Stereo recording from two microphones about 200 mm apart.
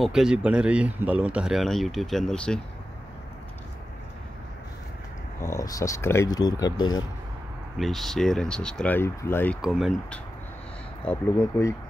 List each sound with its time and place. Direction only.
0.0 s speech: 5° right (ahead or behind)
5.4 s speech: 15° left (ahead or behind)
7.7 s speech: centre (ahead or behind)
9.6 s speech: centre (ahead or behind)
11.1 s speech: 15° left (ahead or behind)